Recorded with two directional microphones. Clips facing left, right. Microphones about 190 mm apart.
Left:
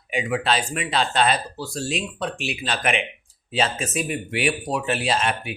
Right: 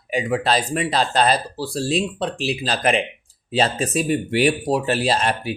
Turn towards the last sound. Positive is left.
turn(degrees=-35)  # may be behind; listen again after turning